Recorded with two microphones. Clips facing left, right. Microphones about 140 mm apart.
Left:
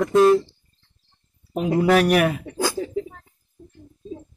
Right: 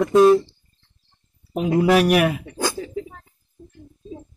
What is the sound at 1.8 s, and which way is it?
Speech, 10° right (ahead or behind).